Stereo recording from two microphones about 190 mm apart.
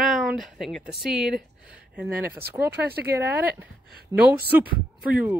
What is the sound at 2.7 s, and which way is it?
Speech, 55° right (ahead or behind).